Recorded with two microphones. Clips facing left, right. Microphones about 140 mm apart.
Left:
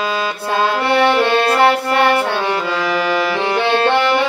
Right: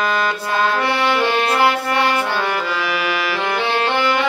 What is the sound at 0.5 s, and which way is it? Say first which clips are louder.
Music: left 4 dB; 25° left (ahead or behind).